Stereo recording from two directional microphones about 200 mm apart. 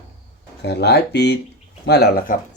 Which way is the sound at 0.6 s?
55° left (ahead or behind).